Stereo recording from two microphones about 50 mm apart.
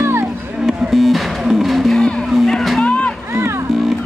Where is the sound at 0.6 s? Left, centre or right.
Centre.